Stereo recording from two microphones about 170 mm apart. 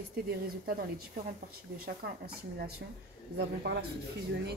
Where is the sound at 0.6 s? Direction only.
60° right (ahead or behind).